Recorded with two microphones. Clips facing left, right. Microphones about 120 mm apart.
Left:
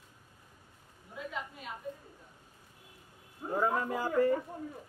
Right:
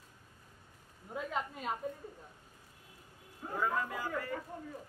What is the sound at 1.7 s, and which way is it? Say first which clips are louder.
Speech: right 6 dB; 45° right (ahead or behind).